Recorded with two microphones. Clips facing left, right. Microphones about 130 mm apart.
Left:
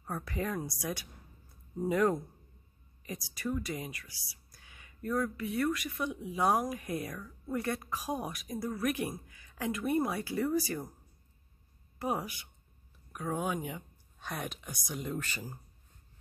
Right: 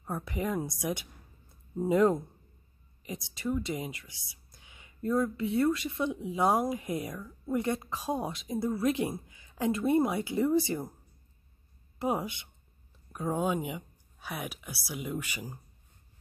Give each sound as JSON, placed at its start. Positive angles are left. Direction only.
{"t": 0.0, "sound": "speech", "side_deg": -20}
{"t": 12.0, "sound": "speech", "side_deg": -20}